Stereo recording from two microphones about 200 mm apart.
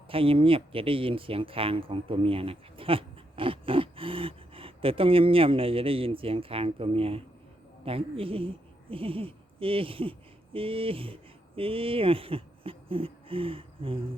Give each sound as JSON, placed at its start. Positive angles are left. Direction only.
{"t": 0.1, "sound": "speech", "side_deg": -25}